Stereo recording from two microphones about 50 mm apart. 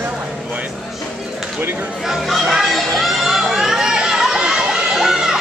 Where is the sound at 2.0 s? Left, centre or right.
Centre.